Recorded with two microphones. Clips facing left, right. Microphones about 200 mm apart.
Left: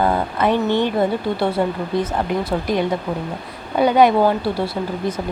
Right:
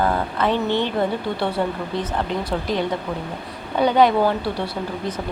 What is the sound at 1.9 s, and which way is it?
A woman's voice, 10° left (ahead or behind).